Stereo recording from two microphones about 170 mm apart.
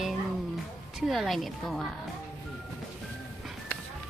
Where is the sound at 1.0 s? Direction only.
Centre (ahead or behind).